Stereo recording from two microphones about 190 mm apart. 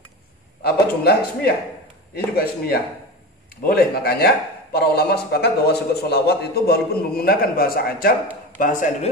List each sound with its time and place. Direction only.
0.7 s a man's voice: 55° left (ahead or behind)